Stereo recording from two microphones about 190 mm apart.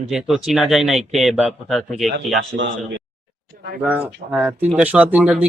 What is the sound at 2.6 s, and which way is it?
Speech, 70° right (ahead or behind).